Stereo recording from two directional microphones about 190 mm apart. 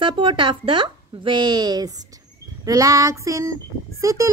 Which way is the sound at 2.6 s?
15° right (ahead or behind).